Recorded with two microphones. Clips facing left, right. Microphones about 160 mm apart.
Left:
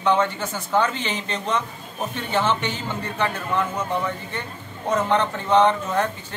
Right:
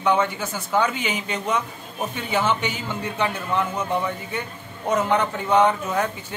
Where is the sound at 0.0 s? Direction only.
10° right (ahead or behind).